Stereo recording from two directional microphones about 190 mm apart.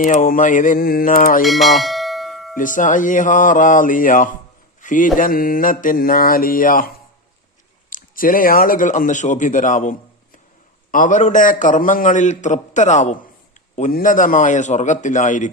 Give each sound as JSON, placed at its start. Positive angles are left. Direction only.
{"t": 0.0, "sound": "mantra", "side_deg": 45}
{"t": 1.5, "sound": "bell", "side_deg": 0}
{"t": 2.6, "sound": "mantra", "side_deg": 45}
{"t": 10.9, "sound": "a man's voice", "side_deg": 45}